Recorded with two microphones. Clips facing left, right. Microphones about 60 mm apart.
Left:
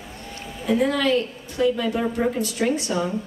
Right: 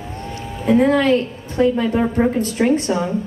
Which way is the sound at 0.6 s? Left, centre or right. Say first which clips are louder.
Right 6 dB; right.